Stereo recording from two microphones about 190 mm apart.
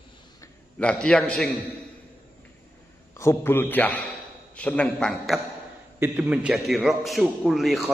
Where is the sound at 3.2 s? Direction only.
15° left (ahead or behind).